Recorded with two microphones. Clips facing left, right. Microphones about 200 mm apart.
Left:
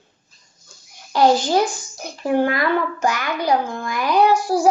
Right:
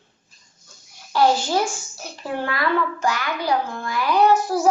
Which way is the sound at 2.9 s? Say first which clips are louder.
Left 2 dB; 20° left (ahead or behind).